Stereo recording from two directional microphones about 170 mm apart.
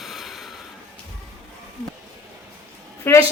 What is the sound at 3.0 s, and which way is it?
Speech, 15° left (ahead or behind).